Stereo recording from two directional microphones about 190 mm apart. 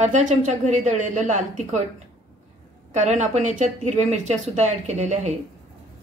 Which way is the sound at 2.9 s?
40° right (ahead or behind).